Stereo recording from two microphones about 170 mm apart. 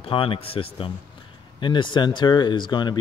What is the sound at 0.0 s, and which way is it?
A man's voice, 30° left (ahead or behind).